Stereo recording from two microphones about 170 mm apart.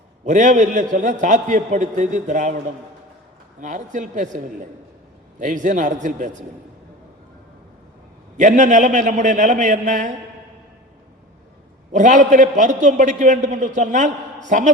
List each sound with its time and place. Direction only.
0.3 s a man's voice: 45° right (ahead or behind)
3.6 s a man's voice: 45° right (ahead or behind)
5.4 s a man's voice: 50° right (ahead or behind)
8.4 s a man's voice: 45° right (ahead or behind)
11.9 s a man's voice: 50° right (ahead or behind)